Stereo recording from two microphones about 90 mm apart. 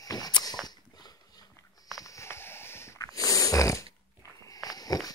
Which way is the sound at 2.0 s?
30° left (ahead or behind).